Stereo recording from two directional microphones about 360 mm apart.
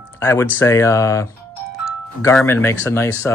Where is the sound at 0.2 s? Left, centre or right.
Centre.